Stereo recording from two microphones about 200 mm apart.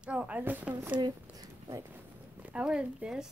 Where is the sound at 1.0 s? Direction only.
20° right (ahead or behind).